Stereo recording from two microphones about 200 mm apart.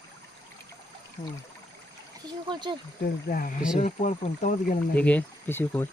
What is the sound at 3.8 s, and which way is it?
Speech, 35° left (ahead or behind).